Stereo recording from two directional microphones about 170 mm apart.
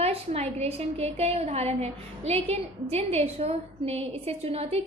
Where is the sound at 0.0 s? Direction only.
40° right (ahead or behind).